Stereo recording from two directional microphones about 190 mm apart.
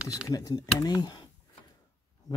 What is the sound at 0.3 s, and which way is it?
Speech, 20° left (ahead or behind).